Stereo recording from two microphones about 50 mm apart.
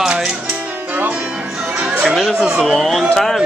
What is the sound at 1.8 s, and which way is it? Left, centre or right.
Music, right.